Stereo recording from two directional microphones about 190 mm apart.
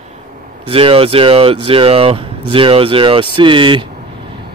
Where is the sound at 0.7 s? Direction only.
30° right (ahead or behind).